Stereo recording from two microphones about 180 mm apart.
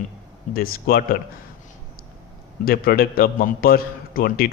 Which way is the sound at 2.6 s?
55° left (ahead or behind).